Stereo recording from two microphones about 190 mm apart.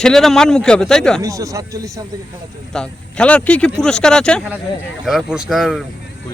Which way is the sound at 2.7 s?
5° left (ahead or behind).